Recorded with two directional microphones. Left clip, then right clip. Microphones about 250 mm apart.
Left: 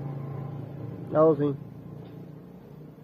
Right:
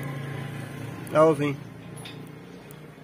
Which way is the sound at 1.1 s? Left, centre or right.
Right.